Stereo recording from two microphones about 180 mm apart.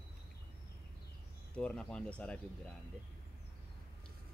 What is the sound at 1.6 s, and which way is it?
Speech, 5° left (ahead or behind).